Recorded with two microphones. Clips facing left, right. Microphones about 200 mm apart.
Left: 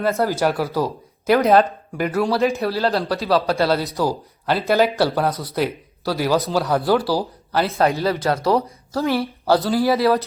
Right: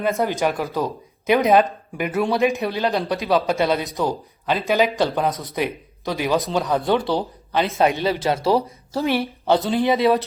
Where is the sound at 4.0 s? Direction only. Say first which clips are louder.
Left 1 dB; 5° left (ahead or behind).